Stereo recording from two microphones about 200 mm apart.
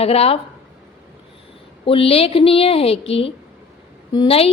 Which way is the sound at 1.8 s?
30° left (ahead or behind).